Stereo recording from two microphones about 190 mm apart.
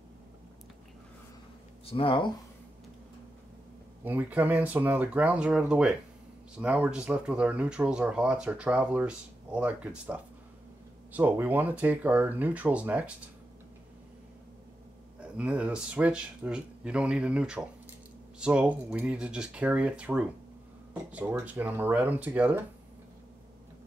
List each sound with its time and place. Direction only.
1.9 s speech: 30° left (ahead or behind)
4.0 s speech: 10° right (ahead or behind)
15.3 s speech: 5° right (ahead or behind)